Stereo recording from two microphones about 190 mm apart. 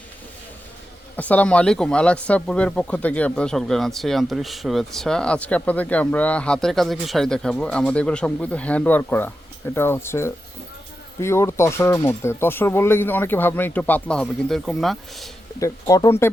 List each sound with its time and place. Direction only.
1.1 s speech: 10° left (ahead or behind)
15.6 s speech: 15° left (ahead or behind)